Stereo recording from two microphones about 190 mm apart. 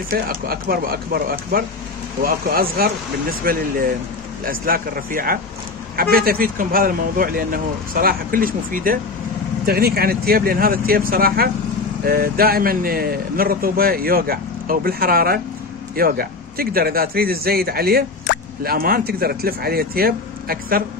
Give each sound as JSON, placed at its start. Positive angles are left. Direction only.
{"t": 0.1, "sound": "speech", "side_deg": -50}